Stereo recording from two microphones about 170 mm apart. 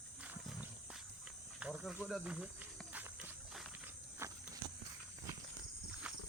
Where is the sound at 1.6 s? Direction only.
5° right (ahead or behind).